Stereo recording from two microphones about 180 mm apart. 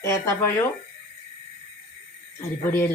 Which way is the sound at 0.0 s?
15° left (ahead or behind).